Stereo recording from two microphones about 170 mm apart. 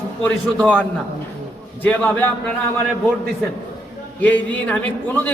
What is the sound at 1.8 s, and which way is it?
Speech, 10° left (ahead or behind).